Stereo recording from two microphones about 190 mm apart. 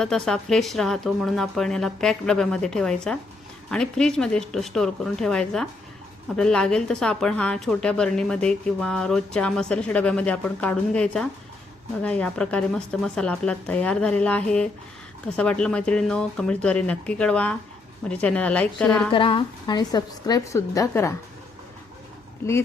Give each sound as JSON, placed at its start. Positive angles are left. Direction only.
{"t": 0.0, "sound": "a woman's voice", "side_deg": 5}
{"t": 19.1, "sound": "a woman's voice", "side_deg": 25}